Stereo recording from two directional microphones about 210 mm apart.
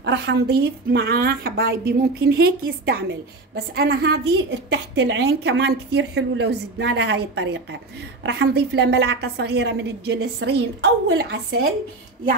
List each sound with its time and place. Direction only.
0.0 s a woman's voice: 55° right (ahead or behind)